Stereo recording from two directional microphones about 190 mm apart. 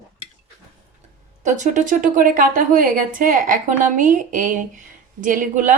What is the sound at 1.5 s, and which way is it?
Speech, 40° right (ahead or behind).